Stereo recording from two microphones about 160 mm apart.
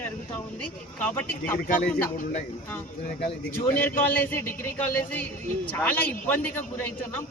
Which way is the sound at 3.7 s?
55° left (ahead or behind).